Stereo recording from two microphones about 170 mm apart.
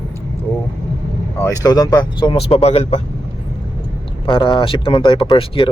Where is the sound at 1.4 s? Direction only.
20° left (ahead or behind); by 3.0 s 40° left (ahead or behind).